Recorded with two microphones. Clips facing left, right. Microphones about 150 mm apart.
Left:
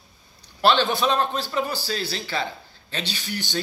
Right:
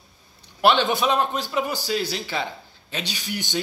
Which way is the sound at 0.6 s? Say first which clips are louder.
Right 1 dB; 15° right (ahead or behind).